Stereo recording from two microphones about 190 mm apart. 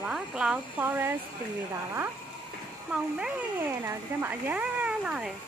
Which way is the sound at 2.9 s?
5° right (ahead or behind).